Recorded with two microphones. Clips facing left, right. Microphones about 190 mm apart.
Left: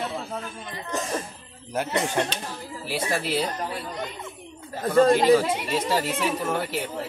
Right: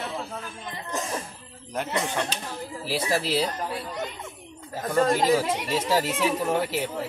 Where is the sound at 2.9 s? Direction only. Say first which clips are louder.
Right 1 dB; 35° right (ahead or behind).